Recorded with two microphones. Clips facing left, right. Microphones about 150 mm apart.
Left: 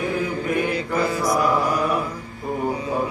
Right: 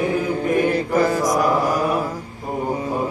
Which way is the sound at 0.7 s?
45° right (ahead or behind).